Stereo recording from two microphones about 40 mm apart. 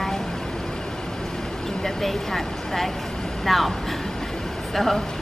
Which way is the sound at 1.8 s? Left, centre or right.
Centre.